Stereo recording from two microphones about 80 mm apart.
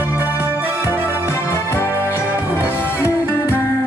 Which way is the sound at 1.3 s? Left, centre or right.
Left.